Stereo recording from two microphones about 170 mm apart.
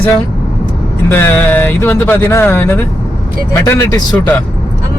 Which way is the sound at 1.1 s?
10° left (ahead or behind).